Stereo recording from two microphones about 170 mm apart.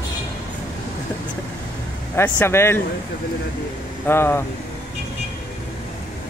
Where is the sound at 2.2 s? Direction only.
15° left (ahead or behind).